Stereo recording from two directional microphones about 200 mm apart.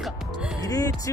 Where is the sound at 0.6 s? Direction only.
15° left (ahead or behind).